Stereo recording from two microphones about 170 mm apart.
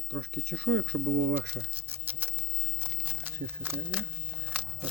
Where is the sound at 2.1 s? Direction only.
10° right (ahead or behind).